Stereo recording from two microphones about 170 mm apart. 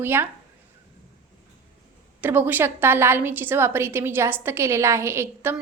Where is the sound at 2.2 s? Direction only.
10° right (ahead or behind).